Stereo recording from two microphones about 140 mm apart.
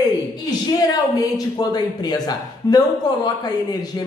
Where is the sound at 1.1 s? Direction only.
25° left (ahead or behind).